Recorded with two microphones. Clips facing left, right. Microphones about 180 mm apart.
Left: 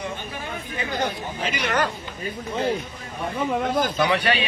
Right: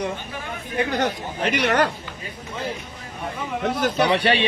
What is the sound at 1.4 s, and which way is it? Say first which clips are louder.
Speech: right 5 dB; 65° right (ahead or behind).